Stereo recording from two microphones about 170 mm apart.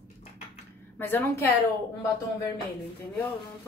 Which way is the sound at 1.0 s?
15° left (ahead or behind).